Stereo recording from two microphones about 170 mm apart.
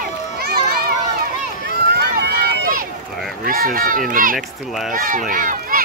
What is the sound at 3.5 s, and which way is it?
Speech, 55° right (ahead or behind).